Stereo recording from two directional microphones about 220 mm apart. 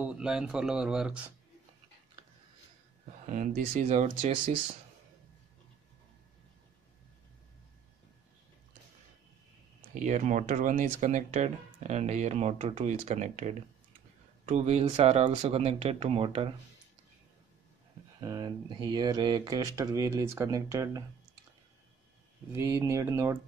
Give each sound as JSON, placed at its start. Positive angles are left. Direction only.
{"t": 0.0, "sound": "speech", "side_deg": -5}
{"t": 3.3, "sound": "speech", "side_deg": -35}
{"t": 10.0, "sound": "speech", "side_deg": -35}
{"t": 18.2, "sound": "speech", "side_deg": -15}
{"t": 22.5, "sound": "speech", "side_deg": -10}